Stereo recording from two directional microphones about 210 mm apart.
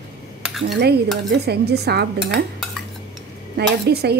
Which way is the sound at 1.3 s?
50° right (ahead or behind).